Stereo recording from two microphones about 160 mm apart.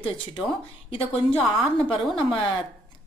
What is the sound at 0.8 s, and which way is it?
A woman's voice, 35° left (ahead or behind).